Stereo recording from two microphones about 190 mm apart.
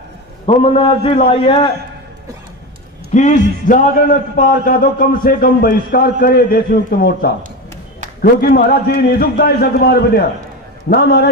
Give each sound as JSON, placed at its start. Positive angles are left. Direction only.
{"t": 0.5, "sound": "a man's voice", "side_deg": 30}
{"t": 3.1, "sound": "a man's voice", "side_deg": 40}